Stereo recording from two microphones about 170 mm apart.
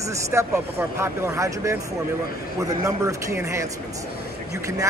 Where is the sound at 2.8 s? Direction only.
20° right (ahead or behind).